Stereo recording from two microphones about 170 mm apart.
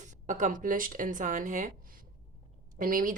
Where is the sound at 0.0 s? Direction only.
45° right (ahead or behind).